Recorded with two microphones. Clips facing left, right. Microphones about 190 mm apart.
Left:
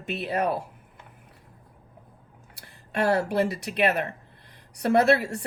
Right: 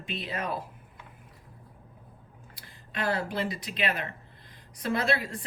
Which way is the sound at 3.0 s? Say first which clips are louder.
Left 7 dB; 70° left (ahead or behind).